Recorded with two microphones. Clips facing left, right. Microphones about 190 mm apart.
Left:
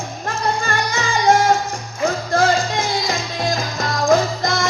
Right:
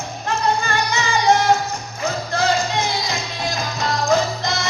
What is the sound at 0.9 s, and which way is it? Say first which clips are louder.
Music: left 1 dB; 50° left (ahead or behind).